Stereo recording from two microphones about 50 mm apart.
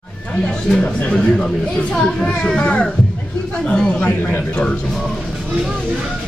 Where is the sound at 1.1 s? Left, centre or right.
Centre.